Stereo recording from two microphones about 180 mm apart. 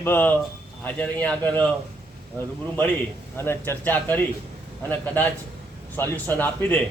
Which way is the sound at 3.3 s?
15° left (ahead or behind).